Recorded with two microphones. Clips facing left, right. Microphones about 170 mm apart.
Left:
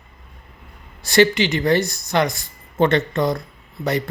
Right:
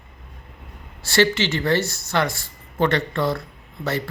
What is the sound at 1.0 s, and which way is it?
Speech, 15° left (ahead or behind).